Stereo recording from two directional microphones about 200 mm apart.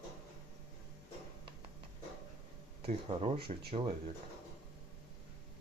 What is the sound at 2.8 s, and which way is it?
Speech, 30° right (ahead or behind).